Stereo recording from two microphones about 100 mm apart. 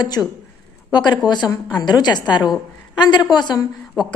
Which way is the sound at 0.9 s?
45° left (ahead or behind).